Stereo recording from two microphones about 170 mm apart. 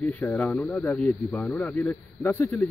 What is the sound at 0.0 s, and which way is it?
A man's voice, 10° left (ahead or behind).